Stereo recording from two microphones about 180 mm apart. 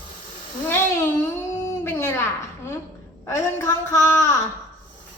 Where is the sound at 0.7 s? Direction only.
15° left (ahead or behind).